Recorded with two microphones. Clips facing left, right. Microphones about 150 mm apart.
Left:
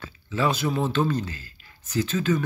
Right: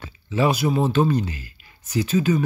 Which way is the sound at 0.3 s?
15° right (ahead or behind).